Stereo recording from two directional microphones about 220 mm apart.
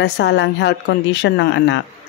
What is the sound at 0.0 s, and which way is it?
Speech, 50° left (ahead or behind).